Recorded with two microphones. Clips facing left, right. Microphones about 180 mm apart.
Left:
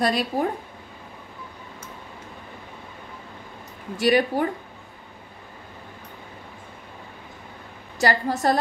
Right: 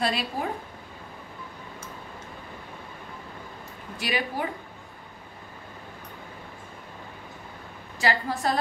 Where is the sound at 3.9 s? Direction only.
45° left (ahead or behind).